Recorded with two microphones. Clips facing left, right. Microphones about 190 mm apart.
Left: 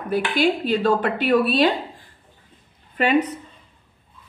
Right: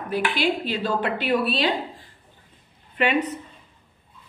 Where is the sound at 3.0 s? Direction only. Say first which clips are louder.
Left 2 dB; 40° left (ahead or behind).